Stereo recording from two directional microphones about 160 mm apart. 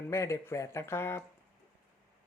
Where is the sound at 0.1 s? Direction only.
20° left (ahead or behind).